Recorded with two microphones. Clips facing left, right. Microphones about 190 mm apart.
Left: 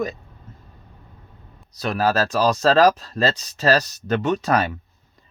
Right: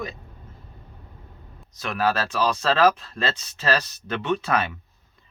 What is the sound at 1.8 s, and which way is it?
Speech, 40° left (ahead or behind).